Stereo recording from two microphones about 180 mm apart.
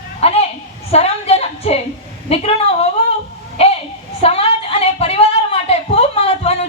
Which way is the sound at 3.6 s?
35° left (ahead or behind).